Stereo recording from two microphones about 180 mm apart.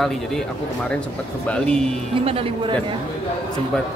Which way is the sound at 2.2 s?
30° right (ahead or behind).